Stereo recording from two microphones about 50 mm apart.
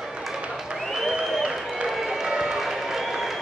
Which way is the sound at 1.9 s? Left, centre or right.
Centre.